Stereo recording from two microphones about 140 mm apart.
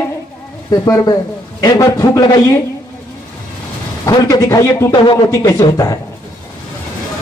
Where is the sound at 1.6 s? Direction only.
25° left (ahead or behind).